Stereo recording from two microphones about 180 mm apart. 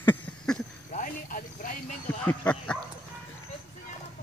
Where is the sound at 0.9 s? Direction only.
50° left (ahead or behind).